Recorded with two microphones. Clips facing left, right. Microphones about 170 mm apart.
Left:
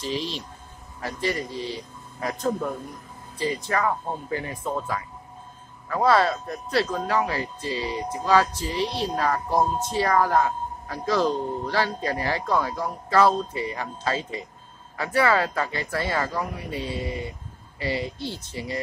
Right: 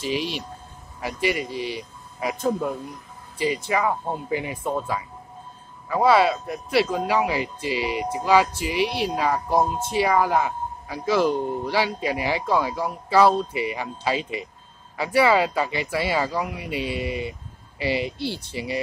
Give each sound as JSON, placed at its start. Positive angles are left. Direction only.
{"t": 0.0, "sound": "a man's voice", "side_deg": -10}
{"t": 8.8, "sound": "speech", "side_deg": -70}
{"t": 9.1, "sound": "a man's voice", "side_deg": -10}